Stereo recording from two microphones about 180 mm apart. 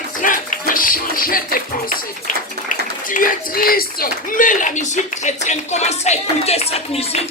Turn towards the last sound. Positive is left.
turn(degrees=35)  # may be behind; listen again after turning